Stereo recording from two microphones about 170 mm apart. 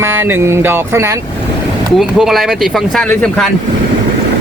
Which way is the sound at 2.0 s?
Centre (ahead or behind).